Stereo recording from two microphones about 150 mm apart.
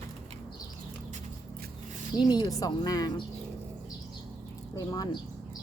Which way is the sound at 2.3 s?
25° left (ahead or behind).